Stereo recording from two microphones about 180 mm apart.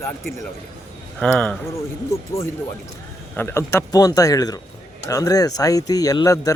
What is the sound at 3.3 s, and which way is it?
Speech, 15° left (ahead or behind).